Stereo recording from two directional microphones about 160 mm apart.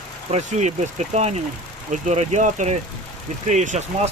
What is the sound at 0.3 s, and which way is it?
Speech, 45° right (ahead or behind).